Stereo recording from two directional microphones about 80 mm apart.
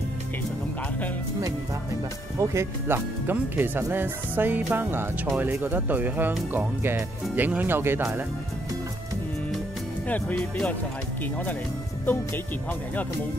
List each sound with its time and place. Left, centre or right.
2.3 s speech: right
10.0 s speech: centre